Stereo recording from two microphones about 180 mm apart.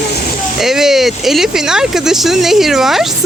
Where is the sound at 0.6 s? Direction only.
Centre (ahead or behind).